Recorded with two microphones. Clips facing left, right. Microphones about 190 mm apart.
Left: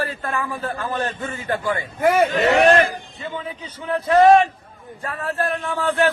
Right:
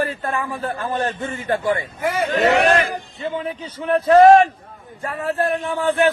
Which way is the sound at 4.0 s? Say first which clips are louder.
Right 4 dB; 30° right (ahead or behind).